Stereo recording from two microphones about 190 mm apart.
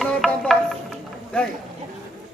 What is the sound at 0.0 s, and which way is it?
Music, centre (ahead or behind).